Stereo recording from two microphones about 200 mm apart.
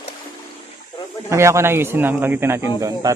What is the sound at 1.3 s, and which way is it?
Speech, 15° right (ahead or behind).